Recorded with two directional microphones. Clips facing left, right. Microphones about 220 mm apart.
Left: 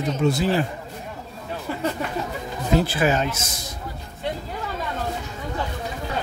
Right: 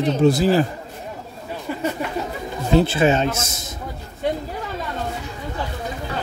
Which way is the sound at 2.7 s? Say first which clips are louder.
Right 4 dB; 25° right (ahead or behind).